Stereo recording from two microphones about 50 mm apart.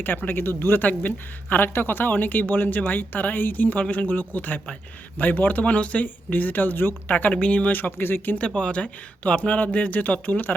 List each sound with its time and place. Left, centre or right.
0.0 s speech: left
8.4 s speech: left